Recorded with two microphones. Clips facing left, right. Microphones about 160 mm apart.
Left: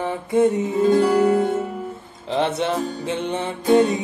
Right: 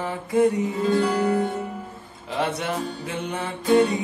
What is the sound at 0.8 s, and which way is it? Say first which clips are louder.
Music: left 5 dB; 40° left (ahead or behind).